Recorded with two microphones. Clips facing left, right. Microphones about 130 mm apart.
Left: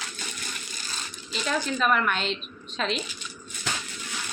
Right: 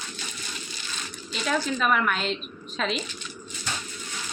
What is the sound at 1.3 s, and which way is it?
A woman's voice, centre (ahead or behind).